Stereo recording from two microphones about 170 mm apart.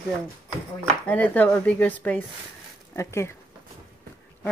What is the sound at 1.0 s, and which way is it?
Speech, 10° left (ahead or behind).